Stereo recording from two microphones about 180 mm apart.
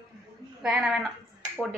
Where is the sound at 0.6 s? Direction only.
5° right (ahead or behind).